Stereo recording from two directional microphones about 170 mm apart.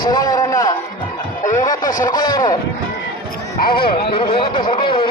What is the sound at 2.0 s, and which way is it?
Speech, 20° left (ahead or behind).